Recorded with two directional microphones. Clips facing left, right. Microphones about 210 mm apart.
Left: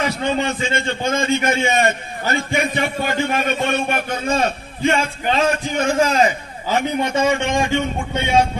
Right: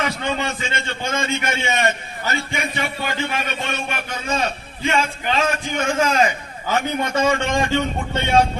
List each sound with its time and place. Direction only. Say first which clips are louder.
0.0 s a man's voice: left 3 dB; 30° left (ahead or behind)
2.3 s a man's voice: left 6 dB; 50° left (ahead or behind)
5.3 s a man's voice: left 4 dB; 30° left (ahead or behind)
7.3 s a man's voice: left 1 dB; 10° left (ahead or behind)